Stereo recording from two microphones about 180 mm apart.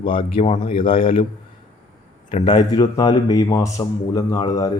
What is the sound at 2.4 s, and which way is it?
A man's voice, 25° left (ahead or behind).